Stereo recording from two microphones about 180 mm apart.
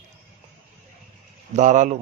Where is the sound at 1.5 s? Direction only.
45° right (ahead or behind).